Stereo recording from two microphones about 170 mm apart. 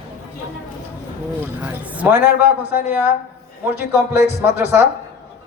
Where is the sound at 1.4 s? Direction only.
10° right (ahead or behind).